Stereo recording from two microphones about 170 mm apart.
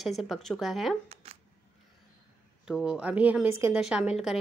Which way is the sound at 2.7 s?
5° right (ahead or behind).